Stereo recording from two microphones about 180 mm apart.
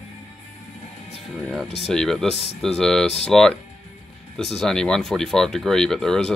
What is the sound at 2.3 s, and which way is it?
Speech, 35° left (ahead or behind).